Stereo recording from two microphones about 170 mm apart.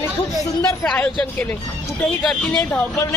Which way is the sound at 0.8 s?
5° left (ahead or behind).